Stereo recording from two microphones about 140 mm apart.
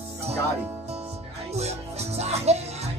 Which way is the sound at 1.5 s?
50° right (ahead or behind).